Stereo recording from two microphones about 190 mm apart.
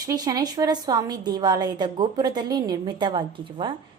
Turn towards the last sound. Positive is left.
turn(degrees=-25)  # may be behind; listen again after turning